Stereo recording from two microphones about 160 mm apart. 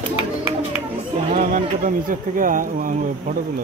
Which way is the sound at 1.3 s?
55° right (ahead or behind).